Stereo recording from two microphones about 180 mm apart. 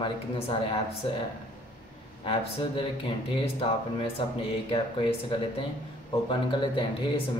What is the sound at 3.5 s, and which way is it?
Speech, 30° left (ahead or behind).